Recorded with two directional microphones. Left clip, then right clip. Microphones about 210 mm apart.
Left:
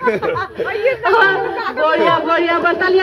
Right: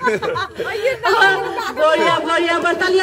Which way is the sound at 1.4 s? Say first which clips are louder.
Left 2 dB; 35° right (ahead or behind).